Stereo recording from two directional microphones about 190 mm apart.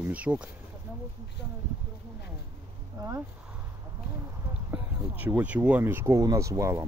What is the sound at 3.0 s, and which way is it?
Speech, 20° right (ahead or behind).